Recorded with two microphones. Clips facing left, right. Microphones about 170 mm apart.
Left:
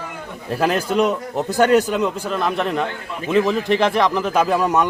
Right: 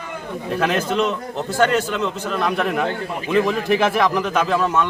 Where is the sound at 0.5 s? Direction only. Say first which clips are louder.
Left 1 dB; 35° left (ahead or behind).